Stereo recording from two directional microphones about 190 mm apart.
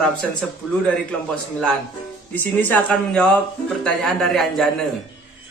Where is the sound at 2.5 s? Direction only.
10° left (ahead or behind).